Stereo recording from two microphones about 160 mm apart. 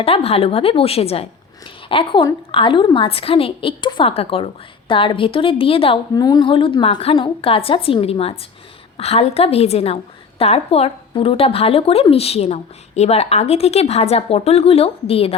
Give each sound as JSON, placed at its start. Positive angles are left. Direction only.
{"t": 0.0, "sound": "a woman's voice", "side_deg": 40}